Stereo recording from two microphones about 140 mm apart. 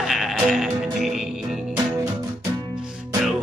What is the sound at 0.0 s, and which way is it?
Music, centre (ahead or behind).